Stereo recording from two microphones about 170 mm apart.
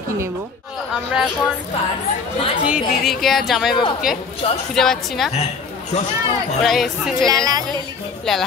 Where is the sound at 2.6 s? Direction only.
5° right (ahead or behind).